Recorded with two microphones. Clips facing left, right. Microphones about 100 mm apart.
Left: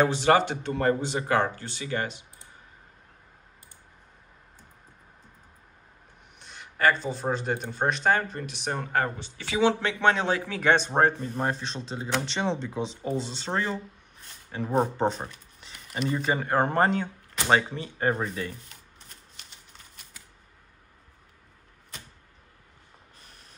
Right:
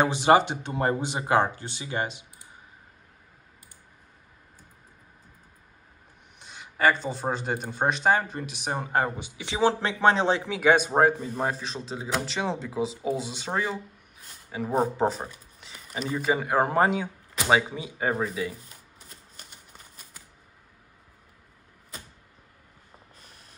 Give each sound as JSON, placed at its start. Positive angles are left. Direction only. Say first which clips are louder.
{"t": 0.0, "sound": "speech", "louder": "right 1 dB", "side_deg": -15}
{"t": 6.4, "sound": "speech", "louder": "right 1 dB", "side_deg": -5}
{"t": 9.6, "sound": "speech", "louder": "even", "side_deg": -35}
{"t": 10.4, "sound": "speech", "louder": "right 2 dB", "side_deg": -10}